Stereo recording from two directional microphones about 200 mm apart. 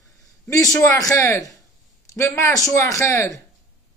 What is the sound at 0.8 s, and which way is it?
A man's voice, 15° left (ahead or behind).